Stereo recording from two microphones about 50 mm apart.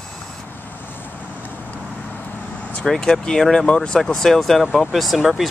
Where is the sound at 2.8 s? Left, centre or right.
Centre.